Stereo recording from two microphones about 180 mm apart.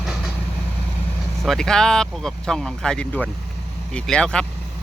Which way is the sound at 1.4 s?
Centre (ahead or behind).